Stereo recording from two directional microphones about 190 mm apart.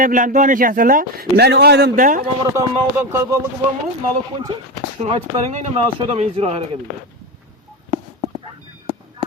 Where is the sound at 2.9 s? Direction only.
15° right (ahead or behind).